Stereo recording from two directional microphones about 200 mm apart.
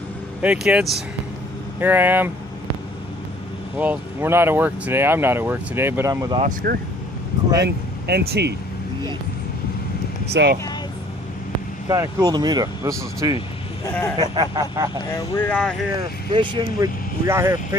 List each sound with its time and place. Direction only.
0.4 s speech: 5° right (ahead or behind)
3.8 s speech: 10° right (ahead or behind)
6.6 s speech: 50° right (ahead or behind)
10.3 s speech: 55° right (ahead or behind)
11.9 s speech: 20° right (ahead or behind)
13.9 s a sound: 10° left (ahead or behind)
14.2 s speech: 20° right (ahead or behind)
15.0 s a sound: 20° left (ahead or behind)
15.4 s speech: 5° left (ahead or behind)
16.0 s speech: 20° right (ahead or behind)